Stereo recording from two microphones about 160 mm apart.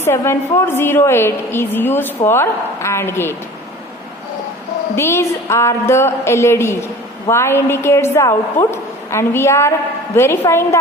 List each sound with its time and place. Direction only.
0.0 s a woman's voice: 15° left (ahead or behind)
4.9 s a woman's voice: 15° left (ahead or behind)